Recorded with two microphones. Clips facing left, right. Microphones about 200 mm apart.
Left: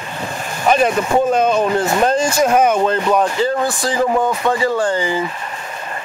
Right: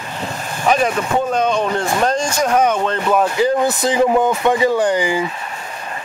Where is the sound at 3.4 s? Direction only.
20° right (ahead or behind).